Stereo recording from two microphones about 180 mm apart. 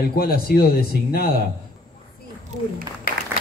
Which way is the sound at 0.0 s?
55° left (ahead or behind).